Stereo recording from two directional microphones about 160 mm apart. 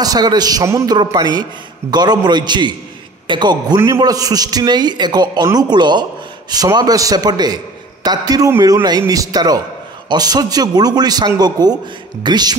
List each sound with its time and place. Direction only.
0.0 s a man's voice: 25° right (ahead or behind)